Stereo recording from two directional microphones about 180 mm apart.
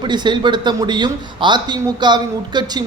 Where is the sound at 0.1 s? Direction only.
25° right (ahead or behind).